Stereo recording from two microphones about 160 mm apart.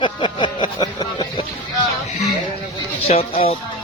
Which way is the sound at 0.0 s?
30° left (ahead or behind).